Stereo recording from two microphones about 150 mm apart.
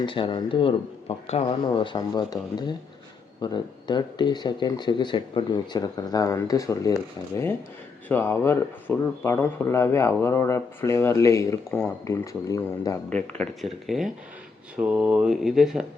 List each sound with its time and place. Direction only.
0.0 s speech: 35° left (ahead or behind)
13.1 s speech: 10° left (ahead or behind)